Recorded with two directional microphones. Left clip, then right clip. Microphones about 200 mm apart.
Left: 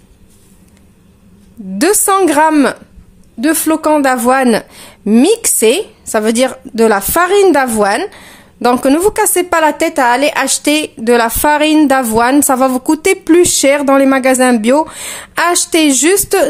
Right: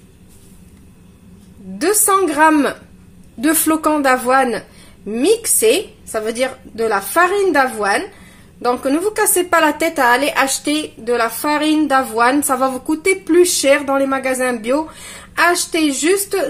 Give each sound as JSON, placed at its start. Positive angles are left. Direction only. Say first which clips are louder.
{"t": 1.8, "sound": "speech", "louder": "left 4 dB", "side_deg": 50}
{"t": 3.3, "sound": "a woman's voice", "louder": "left 3 dB", "side_deg": 20}
{"t": 4.1, "sound": "speech", "louder": "left 3 dB", "side_deg": 40}